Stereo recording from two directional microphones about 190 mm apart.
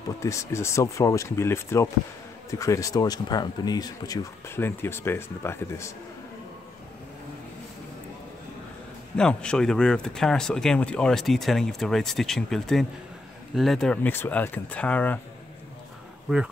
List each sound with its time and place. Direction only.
0.2 s speech: 15° left (ahead or behind)
9.1 s speech: 5° left (ahead or behind)